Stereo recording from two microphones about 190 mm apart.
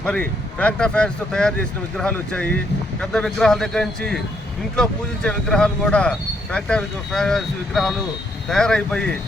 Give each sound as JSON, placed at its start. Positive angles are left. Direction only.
{"t": 0.0, "sound": "speech", "side_deg": 5}